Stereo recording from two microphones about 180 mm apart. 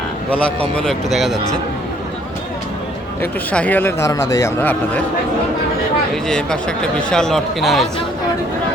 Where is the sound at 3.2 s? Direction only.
10° left (ahead or behind).